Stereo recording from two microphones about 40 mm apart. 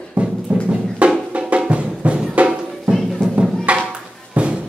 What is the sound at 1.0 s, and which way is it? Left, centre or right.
Music, right.